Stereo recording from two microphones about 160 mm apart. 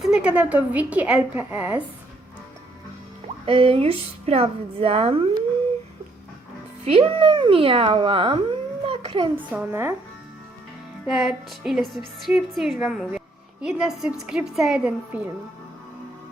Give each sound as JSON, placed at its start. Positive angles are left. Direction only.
{"t": 0.0, "sound": "a woman's voice", "side_deg": -5}
{"t": 3.4, "sound": "a woman's voice", "side_deg": -35}
{"t": 6.8, "sound": "speech", "side_deg": -35}
{"t": 9.3, "sound": "a woman's voice", "side_deg": -10}
{"t": 11.0, "sound": "a woman's voice", "side_deg": -5}